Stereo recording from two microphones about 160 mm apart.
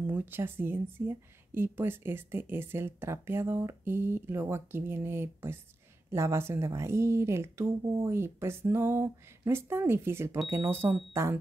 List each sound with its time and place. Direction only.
0.0 s speech: 10° right (ahead or behind)